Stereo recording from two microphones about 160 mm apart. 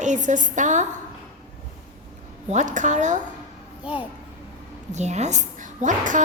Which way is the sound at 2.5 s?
50° right (ahead or behind).